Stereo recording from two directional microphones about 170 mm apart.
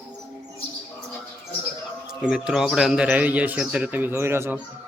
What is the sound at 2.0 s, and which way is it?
Speech, 5° right (ahead or behind).